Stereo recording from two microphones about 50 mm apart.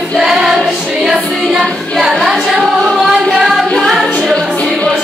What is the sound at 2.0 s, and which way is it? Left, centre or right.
Music, centre.